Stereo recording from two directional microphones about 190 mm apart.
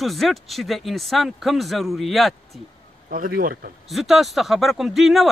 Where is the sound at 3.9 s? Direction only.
Centre (ahead or behind).